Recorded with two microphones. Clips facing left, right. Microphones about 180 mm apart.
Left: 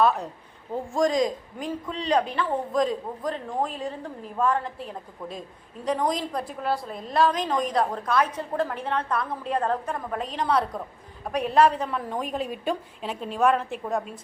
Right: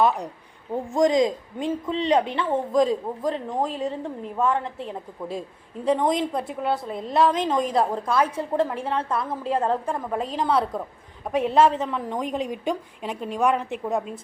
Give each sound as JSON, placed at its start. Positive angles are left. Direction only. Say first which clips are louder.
{"t": 0.0, "sound": "a woman's voice", "louder": "right 1 dB", "side_deg": -15}
{"t": 8.7, "sound": "a woman's voice", "louder": "right 2 dB", "side_deg": -10}
{"t": 9.0, "sound": "a man's voice", "louder": "right 1 dB", "side_deg": -25}
{"t": 10.3, "sound": "a woman's voice", "louder": "right 1 dB", "side_deg": -5}
{"t": 11.3, "sound": "a man's voice", "louder": "right 2 dB", "side_deg": -25}